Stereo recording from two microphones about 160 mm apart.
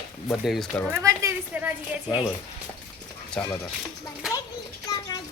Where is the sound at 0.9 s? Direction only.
20° right (ahead or behind).